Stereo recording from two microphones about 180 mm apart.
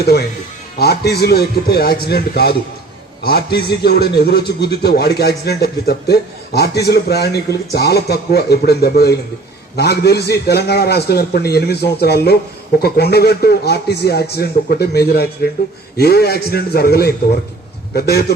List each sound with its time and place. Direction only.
0.0 s a man's voice: 65° left (ahead or behind)